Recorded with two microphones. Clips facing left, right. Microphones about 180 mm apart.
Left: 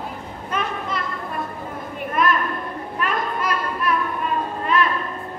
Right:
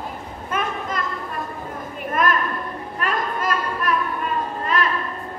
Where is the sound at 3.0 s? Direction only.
45° right (ahead or behind).